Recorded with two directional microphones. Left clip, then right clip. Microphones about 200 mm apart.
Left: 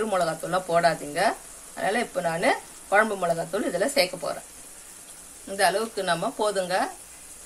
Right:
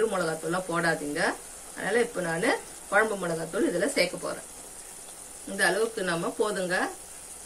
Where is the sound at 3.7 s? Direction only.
55° left (ahead or behind).